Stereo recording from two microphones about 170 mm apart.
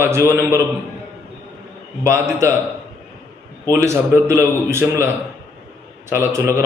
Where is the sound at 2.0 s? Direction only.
15° right (ahead or behind).